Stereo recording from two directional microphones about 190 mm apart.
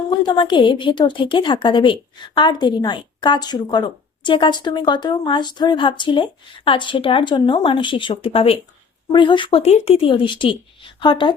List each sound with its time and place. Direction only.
0.1 s a woman's voice: 25° left (ahead or behind)